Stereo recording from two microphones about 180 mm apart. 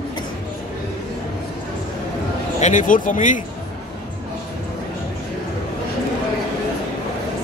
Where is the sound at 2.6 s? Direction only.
45° left (ahead or behind).